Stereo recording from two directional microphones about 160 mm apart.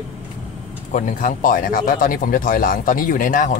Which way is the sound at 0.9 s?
55° left (ahead or behind).